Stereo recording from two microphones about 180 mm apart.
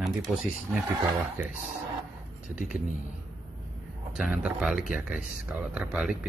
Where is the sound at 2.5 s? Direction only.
5° right (ahead or behind).